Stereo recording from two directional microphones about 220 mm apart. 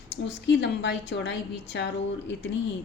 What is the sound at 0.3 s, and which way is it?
A woman's voice, 55° left (ahead or behind).